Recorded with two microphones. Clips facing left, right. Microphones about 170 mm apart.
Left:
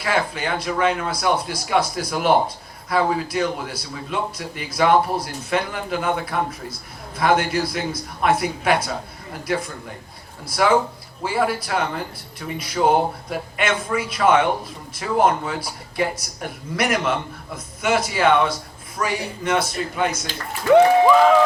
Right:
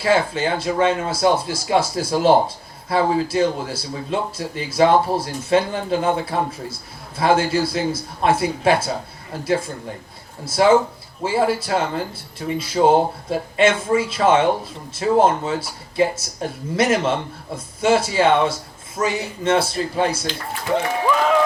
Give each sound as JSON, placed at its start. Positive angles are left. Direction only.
{"t": 0.0, "sound": "speech", "side_deg": -25}